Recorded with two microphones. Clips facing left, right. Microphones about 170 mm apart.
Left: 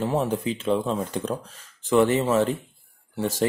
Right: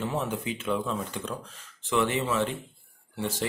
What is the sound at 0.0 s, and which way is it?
Speech, 35° left (ahead or behind).